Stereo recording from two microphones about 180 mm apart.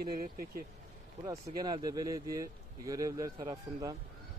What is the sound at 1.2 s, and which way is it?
Speech, 20° right (ahead or behind).